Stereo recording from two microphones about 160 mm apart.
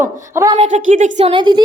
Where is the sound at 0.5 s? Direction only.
45° right (ahead or behind).